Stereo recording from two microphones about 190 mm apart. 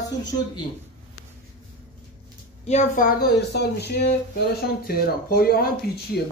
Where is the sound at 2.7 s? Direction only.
40° left (ahead or behind).